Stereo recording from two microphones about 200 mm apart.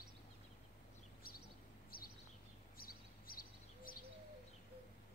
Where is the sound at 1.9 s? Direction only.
45° left (ahead or behind).